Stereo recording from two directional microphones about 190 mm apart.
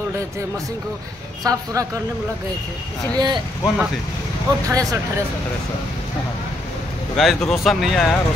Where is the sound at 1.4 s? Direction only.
20° right (ahead or behind).